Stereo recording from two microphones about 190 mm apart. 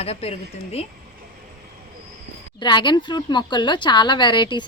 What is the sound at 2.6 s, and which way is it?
Speech, 25° left (ahead or behind).